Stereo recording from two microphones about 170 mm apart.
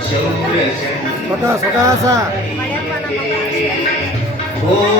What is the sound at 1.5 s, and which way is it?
Speech, 15° right (ahead or behind).